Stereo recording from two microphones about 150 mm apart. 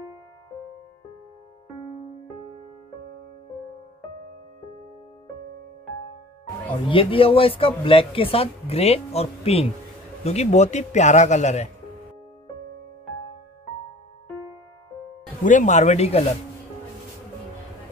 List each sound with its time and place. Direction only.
6.9 s a man's voice: 35° left (ahead or behind)
15.4 s a man's voice: 55° left (ahead or behind)